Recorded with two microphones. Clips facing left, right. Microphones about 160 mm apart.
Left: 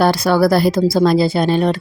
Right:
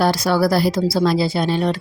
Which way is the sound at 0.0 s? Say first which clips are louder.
Left 3 dB; 55° left (ahead or behind).